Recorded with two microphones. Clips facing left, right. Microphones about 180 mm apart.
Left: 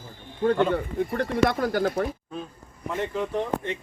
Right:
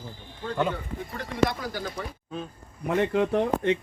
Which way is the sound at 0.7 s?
55° left (ahead or behind).